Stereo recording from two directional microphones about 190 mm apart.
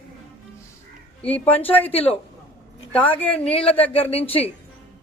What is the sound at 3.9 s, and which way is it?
Speech, 30° left (ahead or behind).